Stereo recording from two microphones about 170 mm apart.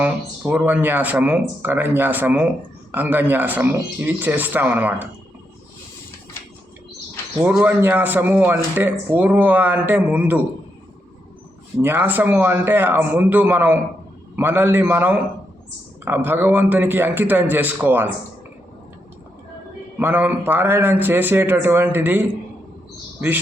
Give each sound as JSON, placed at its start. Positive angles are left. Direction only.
{"t": 0.0, "sound": "speech", "side_deg": -10}
{"t": 7.4, "sound": "speech", "side_deg": -10}
{"t": 11.8, "sound": "speech", "side_deg": -10}
{"t": 20.0, "sound": "speech", "side_deg": -10}